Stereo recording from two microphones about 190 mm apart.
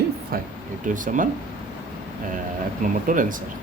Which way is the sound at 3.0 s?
45° right (ahead or behind).